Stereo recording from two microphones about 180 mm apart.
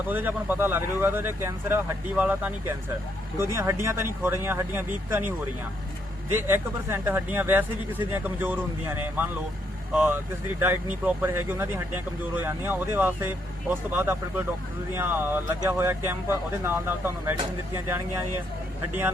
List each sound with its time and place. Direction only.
0.1 s speech: 10° right (ahead or behind)
6.3 s speech: 15° right (ahead or behind)
9.9 s speech: 10° right (ahead or behind)